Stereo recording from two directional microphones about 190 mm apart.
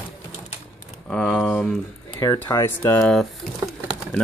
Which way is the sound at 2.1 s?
15° left (ahead or behind).